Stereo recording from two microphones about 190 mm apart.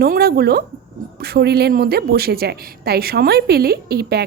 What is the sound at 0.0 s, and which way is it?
A woman's voice, 55° right (ahead or behind).